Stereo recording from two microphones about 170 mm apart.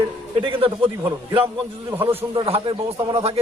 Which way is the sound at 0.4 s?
30° right (ahead or behind).